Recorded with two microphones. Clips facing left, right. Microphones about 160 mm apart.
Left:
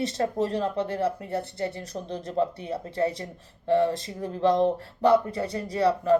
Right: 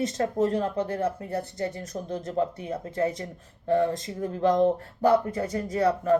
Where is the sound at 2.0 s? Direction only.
20° left (ahead or behind).